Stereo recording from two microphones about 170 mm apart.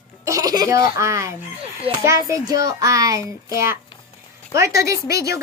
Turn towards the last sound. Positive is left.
turn(degrees=-20)  # may be behind; listen again after turning